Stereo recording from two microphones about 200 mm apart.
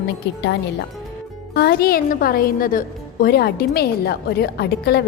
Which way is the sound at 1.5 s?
50° left (ahead or behind).